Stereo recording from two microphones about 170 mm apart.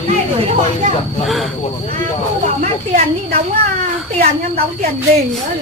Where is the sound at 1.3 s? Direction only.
Centre (ahead or behind).